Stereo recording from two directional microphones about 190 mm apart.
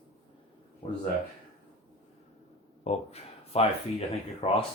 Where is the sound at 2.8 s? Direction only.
30° left (ahead or behind).